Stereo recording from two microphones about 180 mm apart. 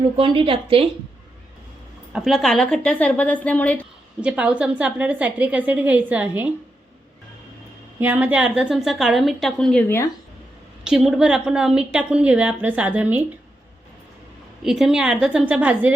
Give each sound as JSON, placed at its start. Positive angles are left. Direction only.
{"t": 0.2, "sound": "a woman's voice", "side_deg": -30}
{"t": 2.1, "sound": "a woman's voice", "side_deg": 0}
{"t": 4.2, "sound": "a woman's voice", "side_deg": -5}
{"t": 7.9, "sound": "a woman's voice", "side_deg": -10}
{"t": 10.8, "sound": "a woman's voice", "side_deg": -5}
{"t": 14.6, "sound": "a woman's voice", "side_deg": 0}